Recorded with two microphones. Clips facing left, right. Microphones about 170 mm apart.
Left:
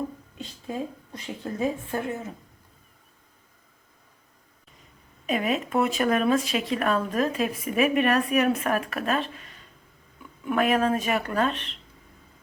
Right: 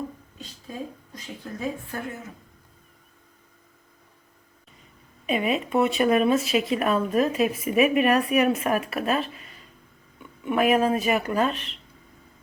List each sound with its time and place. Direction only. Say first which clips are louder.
1.1 s speech: left 4 dB; 25° left (ahead or behind)
5.3 s speech: right 1 dB; centre (ahead or behind)
10.4 s speech: right 2 dB; 10° right (ahead or behind)